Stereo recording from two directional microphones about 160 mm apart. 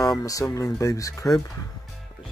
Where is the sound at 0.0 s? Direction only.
20° left (ahead or behind).